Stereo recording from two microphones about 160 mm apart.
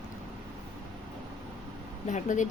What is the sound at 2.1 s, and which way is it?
Speech, 50° left (ahead or behind).